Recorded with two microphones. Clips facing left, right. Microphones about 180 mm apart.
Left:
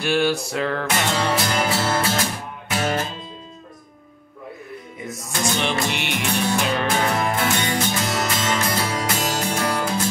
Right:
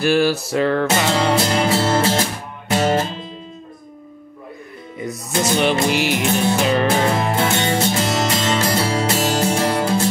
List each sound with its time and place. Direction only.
0.0 s music: centre (ahead or behind)
0.8 s music: 25° right (ahead or behind)
4.9 s music: centre (ahead or behind)
7.2 s music: 30° right (ahead or behind)